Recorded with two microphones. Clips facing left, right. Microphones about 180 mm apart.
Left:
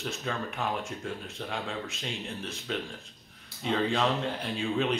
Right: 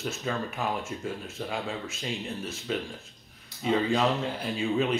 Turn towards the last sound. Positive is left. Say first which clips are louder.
# right 2 dB
turn(degrees=-5)  # may be behind; listen again after turning